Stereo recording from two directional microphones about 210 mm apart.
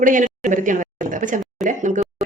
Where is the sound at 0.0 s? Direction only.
40° right (ahead or behind).